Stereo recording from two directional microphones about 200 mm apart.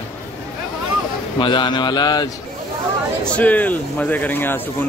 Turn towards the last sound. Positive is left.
turn(degrees=10)  # may be behind; listen again after turning